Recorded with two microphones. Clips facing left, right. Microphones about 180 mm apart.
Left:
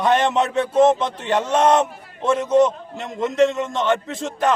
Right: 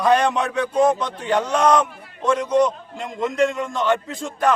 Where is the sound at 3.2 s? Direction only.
25° left (ahead or behind).